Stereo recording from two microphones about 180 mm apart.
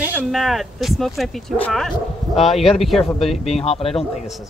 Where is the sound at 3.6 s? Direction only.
35° left (ahead or behind).